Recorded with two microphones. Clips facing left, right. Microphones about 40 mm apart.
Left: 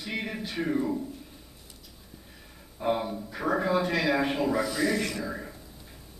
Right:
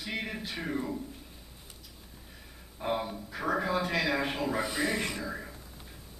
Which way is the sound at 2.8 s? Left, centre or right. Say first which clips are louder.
Left 4 dB; centre.